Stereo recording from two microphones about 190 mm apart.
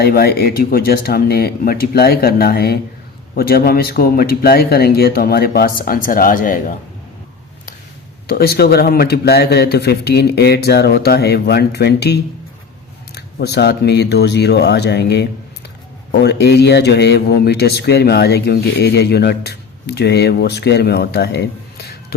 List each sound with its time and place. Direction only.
0.0 s speech: 55° left (ahead or behind)
8.3 s speech: 55° left (ahead or behind)